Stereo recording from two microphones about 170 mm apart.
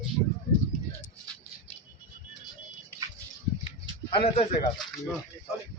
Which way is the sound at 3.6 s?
35° left (ahead or behind).